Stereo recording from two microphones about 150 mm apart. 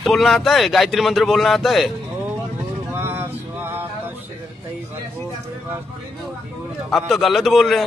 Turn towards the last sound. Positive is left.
turn(degrees=0)  # may be behind; listen again after turning